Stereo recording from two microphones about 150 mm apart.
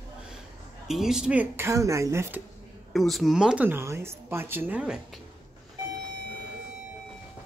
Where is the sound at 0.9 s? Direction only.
5° right (ahead or behind).